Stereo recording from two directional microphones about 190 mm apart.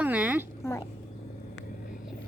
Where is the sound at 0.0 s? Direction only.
5° right (ahead or behind).